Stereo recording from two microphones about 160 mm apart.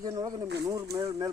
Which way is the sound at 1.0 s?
35° right (ahead or behind).